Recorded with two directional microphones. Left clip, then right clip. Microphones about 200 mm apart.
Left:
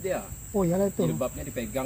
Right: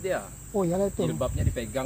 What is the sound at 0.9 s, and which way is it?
Speech, 5° left (ahead or behind).